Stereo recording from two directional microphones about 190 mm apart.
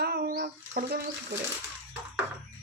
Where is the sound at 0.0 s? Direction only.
55° right (ahead or behind).